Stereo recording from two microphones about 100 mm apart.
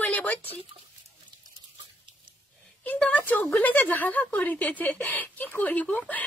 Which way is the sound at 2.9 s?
15° left (ahead or behind).